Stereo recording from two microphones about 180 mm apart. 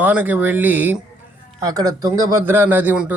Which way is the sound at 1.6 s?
20° right (ahead or behind).